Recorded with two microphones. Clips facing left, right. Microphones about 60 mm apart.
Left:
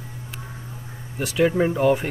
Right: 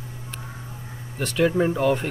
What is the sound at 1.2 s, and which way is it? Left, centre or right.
Speech, centre.